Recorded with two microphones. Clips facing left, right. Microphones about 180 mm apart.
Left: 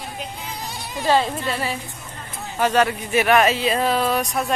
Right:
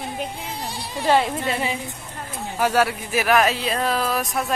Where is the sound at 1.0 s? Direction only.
15° right (ahead or behind).